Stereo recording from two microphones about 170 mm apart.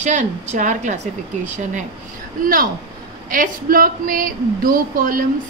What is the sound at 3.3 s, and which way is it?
A woman's voice, 55° right (ahead or behind).